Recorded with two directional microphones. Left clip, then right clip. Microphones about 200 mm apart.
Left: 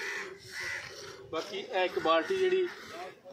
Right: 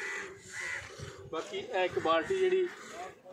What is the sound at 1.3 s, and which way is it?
Speech, 20° left (ahead or behind).